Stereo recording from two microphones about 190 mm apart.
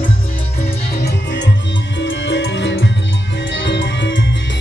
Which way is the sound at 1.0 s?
65° left (ahead or behind).